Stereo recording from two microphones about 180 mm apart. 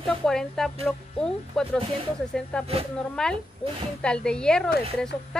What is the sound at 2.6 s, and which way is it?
Speech, 35° right (ahead or behind).